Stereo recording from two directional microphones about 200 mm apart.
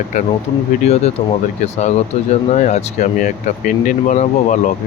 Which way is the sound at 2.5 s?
35° left (ahead or behind).